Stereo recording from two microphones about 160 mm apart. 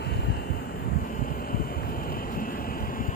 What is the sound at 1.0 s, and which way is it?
Vehicle, 60° left (ahead or behind).